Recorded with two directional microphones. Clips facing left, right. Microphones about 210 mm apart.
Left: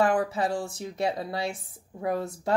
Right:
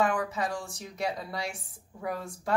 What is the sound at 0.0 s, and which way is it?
A woman's voice, 35° left (ahead or behind).